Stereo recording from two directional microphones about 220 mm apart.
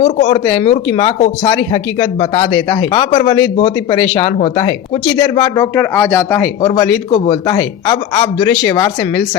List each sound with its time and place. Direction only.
0.0 s speech: 25° left (ahead or behind)
5.7 s speech: 10° left (ahead or behind)